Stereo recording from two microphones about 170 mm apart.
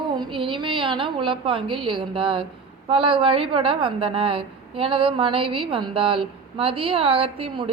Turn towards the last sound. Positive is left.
turn(degrees=-35)  # may be behind; listen again after turning